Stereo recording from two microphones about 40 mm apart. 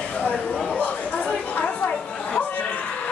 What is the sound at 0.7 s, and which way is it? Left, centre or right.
Chatter, left.